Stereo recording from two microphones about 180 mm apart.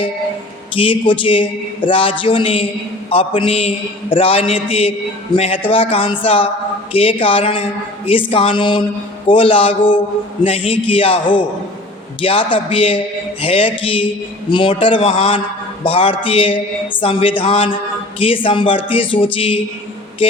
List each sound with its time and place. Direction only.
0.8 s a man's voice: 30° left (ahead or behind)